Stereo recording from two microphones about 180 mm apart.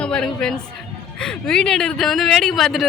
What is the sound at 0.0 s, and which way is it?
Speech, 5° left (ahead or behind).